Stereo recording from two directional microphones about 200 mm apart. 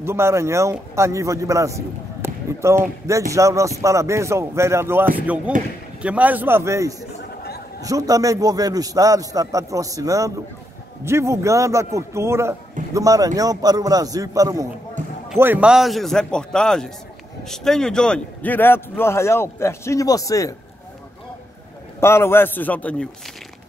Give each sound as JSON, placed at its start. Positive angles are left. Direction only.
{"t": 0.0, "sound": "a man's voice", "side_deg": -10}
{"t": 22.0, "sound": "a man's voice", "side_deg": 10}